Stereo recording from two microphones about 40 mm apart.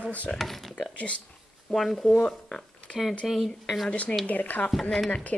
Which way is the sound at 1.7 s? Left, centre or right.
Centre.